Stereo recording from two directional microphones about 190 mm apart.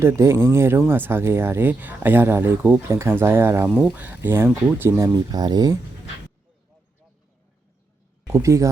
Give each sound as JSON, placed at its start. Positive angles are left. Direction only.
{"t": 0.0, "sound": "speech", "side_deg": -15}
{"t": 8.3, "sound": "speech", "side_deg": -15}